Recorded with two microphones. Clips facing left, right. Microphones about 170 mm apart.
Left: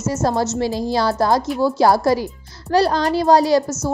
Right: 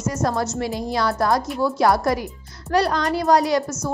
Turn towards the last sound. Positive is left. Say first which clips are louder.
# left 4 dB
turn(degrees=30)  # may be behind; listen again after turning